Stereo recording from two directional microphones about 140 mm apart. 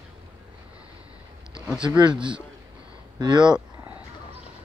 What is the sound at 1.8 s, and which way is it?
Speech, 35° right (ahead or behind).